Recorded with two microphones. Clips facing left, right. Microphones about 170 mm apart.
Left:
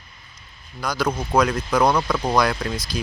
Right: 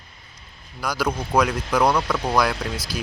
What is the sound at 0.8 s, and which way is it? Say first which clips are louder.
Speech: left 1 dB; 10° right (ahead or behind).